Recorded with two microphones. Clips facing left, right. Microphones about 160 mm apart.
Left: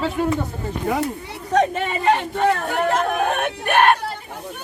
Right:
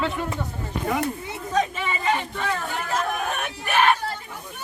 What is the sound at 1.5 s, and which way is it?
Speech, 65° left (ahead or behind).